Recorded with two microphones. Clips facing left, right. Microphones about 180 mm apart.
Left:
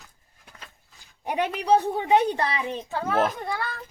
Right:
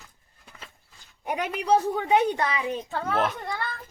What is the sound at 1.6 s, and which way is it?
Speech, 35° left (ahead or behind).